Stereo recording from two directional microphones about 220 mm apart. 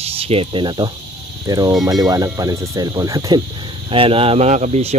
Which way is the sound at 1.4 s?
15° right (ahead or behind).